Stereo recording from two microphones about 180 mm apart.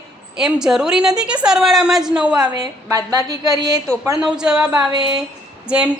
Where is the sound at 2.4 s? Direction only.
20° right (ahead or behind).